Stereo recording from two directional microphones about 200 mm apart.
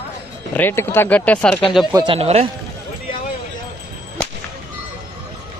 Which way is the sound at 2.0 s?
30° right (ahead or behind).